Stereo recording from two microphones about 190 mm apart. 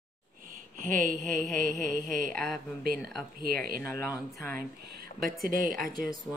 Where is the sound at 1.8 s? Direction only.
45° right (ahead or behind).